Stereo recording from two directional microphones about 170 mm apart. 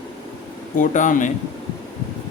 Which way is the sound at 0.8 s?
50° left (ahead or behind).